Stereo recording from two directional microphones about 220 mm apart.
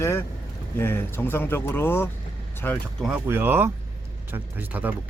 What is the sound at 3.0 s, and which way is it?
Speech, 10° right (ahead or behind).